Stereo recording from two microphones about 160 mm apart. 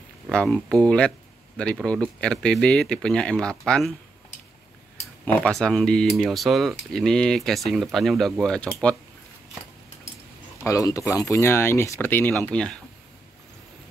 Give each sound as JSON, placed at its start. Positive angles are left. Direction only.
{"t": 0.3, "sound": "speech", "side_deg": 5}
{"t": 5.2, "sound": "speech", "side_deg": 5}
{"t": 10.6, "sound": "speech", "side_deg": 20}